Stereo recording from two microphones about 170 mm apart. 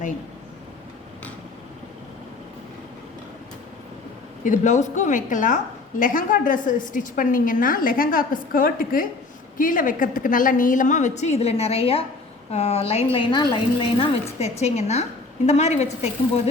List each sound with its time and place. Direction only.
4.4 s a woman's voice: 45° left (ahead or behind)